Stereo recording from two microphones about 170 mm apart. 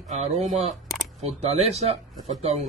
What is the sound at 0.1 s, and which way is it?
Speech, 45° right (ahead or behind).